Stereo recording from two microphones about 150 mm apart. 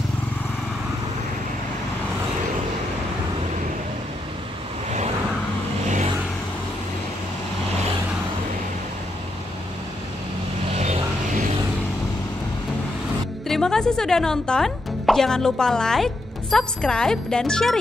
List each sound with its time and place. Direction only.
10.8 s vehicle: 50° right (ahead or behind)
13.5 s speech: 5° left (ahead or behind)